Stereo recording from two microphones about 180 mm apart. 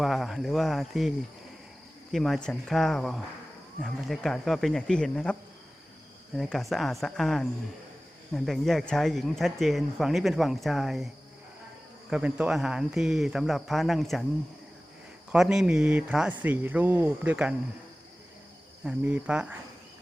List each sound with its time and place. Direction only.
0.0 s speech: centre (ahead or behind)
2.1 s speech: centre (ahead or behind)
12.1 s speech: 5° right (ahead or behind)
15.3 s speech: 5° right (ahead or behind)
18.9 s speech: 5° right (ahead or behind)